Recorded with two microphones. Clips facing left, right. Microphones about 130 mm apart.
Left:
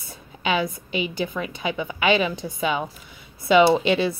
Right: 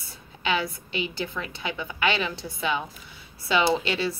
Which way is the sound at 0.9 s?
15° left (ahead or behind).